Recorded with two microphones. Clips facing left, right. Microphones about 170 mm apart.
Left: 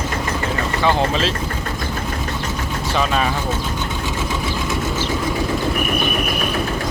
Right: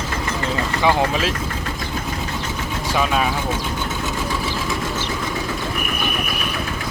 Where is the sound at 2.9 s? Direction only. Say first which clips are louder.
Even; 5° right (ahead or behind).